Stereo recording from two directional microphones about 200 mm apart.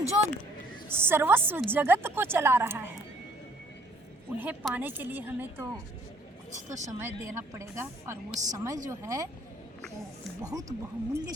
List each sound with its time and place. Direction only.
0.9 s a woman's voice: 10° right (ahead or behind)
4.3 s a woman's voice: 10° right (ahead or behind)
6.7 s speech: 35° right (ahead or behind)
7.0 s a woman's voice: 15° right (ahead or behind)
10.4 s a woman's voice: 20° right (ahead or behind)